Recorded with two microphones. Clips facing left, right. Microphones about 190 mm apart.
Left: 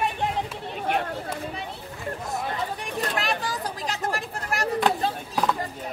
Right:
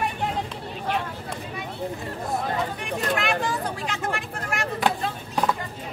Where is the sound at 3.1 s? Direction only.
35° left (ahead or behind).